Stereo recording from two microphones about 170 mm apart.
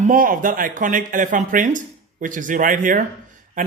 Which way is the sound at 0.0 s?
55° right (ahead or behind).